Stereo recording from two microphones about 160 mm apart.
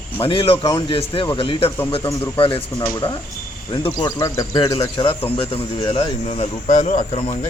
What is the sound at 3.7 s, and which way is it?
Speech, 30° left (ahead or behind).